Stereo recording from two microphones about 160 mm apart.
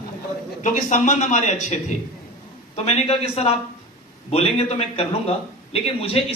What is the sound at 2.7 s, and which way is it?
A man's voice, 40° left (ahead or behind).